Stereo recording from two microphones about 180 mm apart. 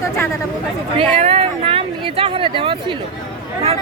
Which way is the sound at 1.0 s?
35° right (ahead or behind).